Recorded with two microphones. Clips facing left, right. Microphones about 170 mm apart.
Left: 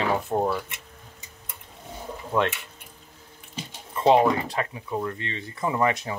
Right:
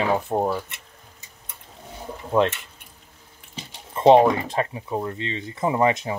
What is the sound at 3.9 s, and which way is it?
Speech, 25° right (ahead or behind).